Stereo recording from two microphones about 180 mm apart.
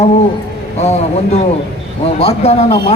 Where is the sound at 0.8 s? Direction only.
35° left (ahead or behind).